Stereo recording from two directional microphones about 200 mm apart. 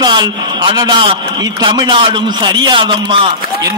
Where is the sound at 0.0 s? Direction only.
20° right (ahead or behind).